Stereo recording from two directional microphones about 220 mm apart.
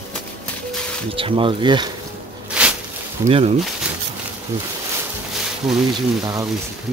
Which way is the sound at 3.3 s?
25° right (ahead or behind).